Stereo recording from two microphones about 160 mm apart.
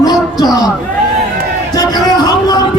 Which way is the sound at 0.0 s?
25° left (ahead or behind).